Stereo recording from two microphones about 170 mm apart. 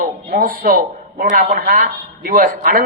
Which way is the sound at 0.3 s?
55° right (ahead or behind).